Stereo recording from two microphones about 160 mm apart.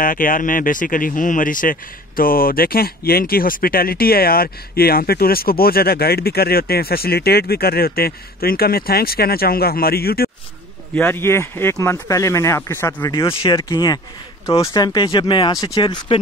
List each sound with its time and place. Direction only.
0.0 s speech: 60° left (ahead or behind)
11.0 s speech: 15° left (ahead or behind)
13.1 s speech: 30° left (ahead or behind)